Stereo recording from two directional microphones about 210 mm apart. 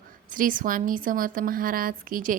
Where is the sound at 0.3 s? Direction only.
40° right (ahead or behind).